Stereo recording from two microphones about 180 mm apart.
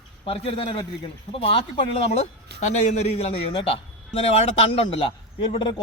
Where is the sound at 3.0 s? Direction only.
35° left (ahead or behind).